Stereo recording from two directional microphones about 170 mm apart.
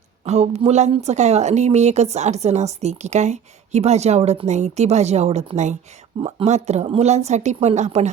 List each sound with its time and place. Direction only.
0.3 s a woman's voice: 40° right (ahead or behind)